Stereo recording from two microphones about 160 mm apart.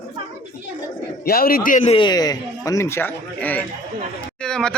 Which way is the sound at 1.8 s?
30° left (ahead or behind).